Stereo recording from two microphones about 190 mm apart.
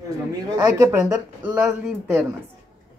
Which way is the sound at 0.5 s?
20° right (ahead or behind).